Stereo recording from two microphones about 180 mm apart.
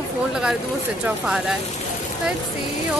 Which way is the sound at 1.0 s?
Centre (ahead or behind).